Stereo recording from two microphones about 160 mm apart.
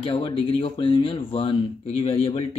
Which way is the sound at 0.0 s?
35° left (ahead or behind).